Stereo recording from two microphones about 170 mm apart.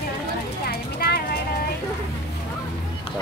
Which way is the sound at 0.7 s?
65° left (ahead or behind).